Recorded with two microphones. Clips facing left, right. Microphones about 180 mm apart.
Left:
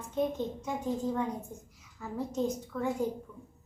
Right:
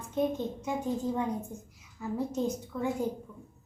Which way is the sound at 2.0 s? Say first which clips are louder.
Right 1 dB; 10° right (ahead or behind).